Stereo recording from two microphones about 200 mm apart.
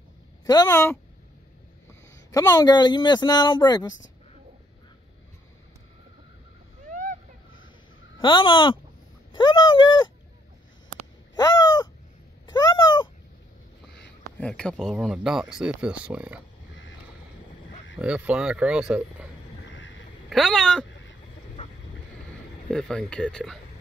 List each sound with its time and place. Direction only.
0.5 s speech: 15° left (ahead or behind)
2.3 s speech: 15° left (ahead or behind)
6.9 s a sound: 40° right (ahead or behind)
8.2 s speech: 25° left (ahead or behind)
11.3 s crow: 20° left (ahead or behind)
12.4 s a sound: 20° left (ahead or behind)
14.4 s speech: 5° left (ahead or behind)
17.9 s speech: 5° right (ahead or behind)
20.2 s speech: centre (ahead or behind)
22.7 s speech: 5° left (ahead or behind)